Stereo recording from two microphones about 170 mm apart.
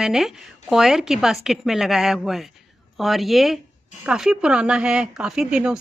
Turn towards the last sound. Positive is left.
turn(degrees=-5)  # may be behind; listen again after turning